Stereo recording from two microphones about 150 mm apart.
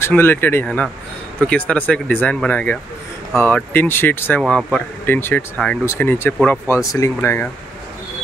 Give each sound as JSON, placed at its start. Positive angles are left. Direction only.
{"t": 0.0, "sound": "speech", "side_deg": 15}
{"t": 4.4, "sound": "speech", "side_deg": 5}